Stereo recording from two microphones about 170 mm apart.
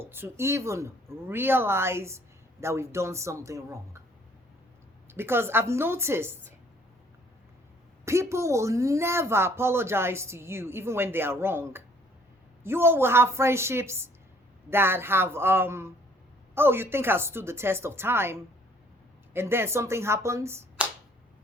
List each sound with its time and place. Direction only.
0.0 s a woman's voice: 15° right (ahead or behind)
5.0 s a woman's voice: 15° right (ahead or behind)
8.0 s a woman's voice: 15° right (ahead or behind)